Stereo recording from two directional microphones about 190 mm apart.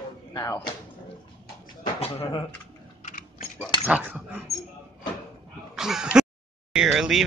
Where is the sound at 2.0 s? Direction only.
30° left (ahead or behind).